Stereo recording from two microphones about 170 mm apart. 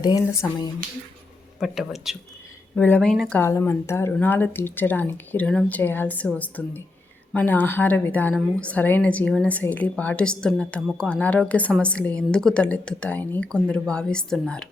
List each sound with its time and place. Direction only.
0.0 s speech: 20° left (ahead or behind)
1.5 s speech: centre (ahead or behind)
2.7 s a woman's voice: 10° left (ahead or behind)